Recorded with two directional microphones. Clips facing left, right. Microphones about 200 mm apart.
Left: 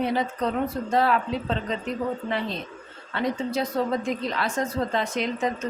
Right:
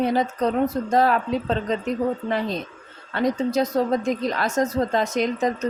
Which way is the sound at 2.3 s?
45° right (ahead or behind).